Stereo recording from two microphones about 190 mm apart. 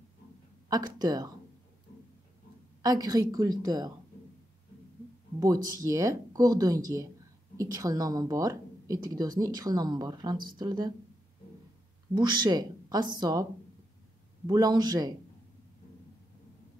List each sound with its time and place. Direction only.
0.7 s speech: 20° right (ahead or behind)
2.8 s speech: 20° right (ahead or behind)
5.4 s speech: 20° right (ahead or behind)
12.1 s speech: 25° right (ahead or behind)